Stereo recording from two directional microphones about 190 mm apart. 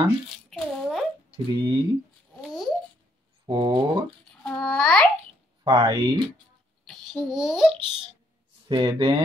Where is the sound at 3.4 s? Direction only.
25° right (ahead or behind).